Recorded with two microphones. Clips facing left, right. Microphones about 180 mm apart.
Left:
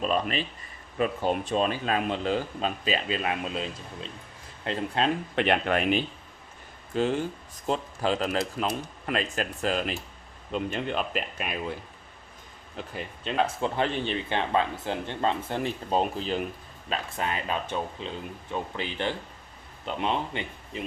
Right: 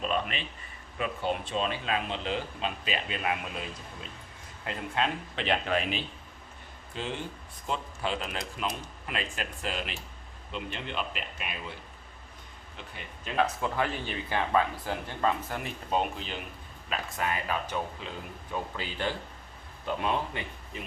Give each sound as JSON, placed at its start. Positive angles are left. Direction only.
{"t": 0.0, "sound": "speech", "side_deg": 40}
{"t": 5.4, "sound": "speech", "side_deg": 60}
{"t": 6.9, "sound": "speech", "side_deg": 45}
{"t": 12.7, "sound": "speech", "side_deg": 40}
{"t": 13.2, "sound": "speech", "side_deg": 25}